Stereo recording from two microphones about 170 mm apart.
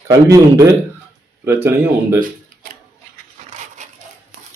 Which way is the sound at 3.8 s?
45° right (ahead or behind).